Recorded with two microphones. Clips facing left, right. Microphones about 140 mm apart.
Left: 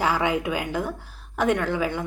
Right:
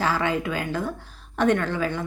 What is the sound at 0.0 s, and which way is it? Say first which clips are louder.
A woman's voice: left 1 dB; 15° left (ahead or behind).